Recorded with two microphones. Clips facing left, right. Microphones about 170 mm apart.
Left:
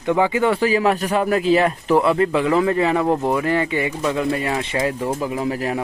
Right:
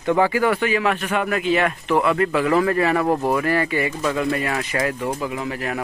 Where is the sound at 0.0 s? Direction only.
15° left (ahead or behind); by 5.8 s 30° left (ahead or behind).